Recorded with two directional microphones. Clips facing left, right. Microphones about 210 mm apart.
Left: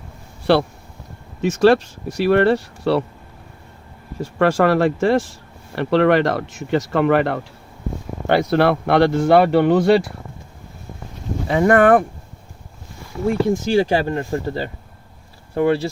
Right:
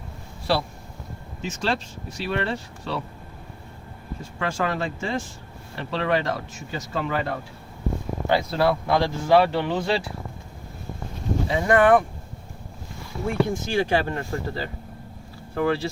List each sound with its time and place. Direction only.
0.5 s speech: 65° left (ahead or behind)
4.2 s speech: 70° left (ahead or behind)
11.4 s speech: 55° left (ahead or behind)
13.4 s speech: 35° left (ahead or behind)